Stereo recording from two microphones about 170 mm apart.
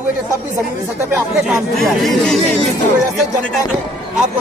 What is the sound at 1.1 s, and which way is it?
Speech, 5° right (ahead or behind).